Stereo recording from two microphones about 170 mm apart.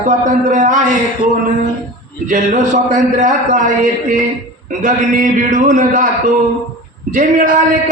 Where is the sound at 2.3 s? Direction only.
45° right (ahead or behind).